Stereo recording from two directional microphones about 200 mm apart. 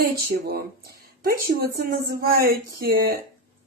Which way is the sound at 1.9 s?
45° right (ahead or behind).